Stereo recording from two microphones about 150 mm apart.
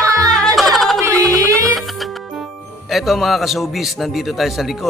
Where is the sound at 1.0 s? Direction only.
20° right (ahead or behind).